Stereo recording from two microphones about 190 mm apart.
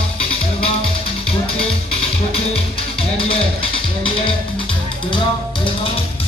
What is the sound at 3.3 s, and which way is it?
Music, 30° left (ahead or behind).